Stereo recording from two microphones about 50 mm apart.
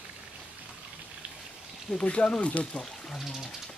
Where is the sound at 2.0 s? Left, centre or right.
Left.